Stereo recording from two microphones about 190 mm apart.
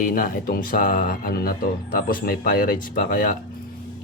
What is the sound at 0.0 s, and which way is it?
Speech, 45° left (ahead or behind).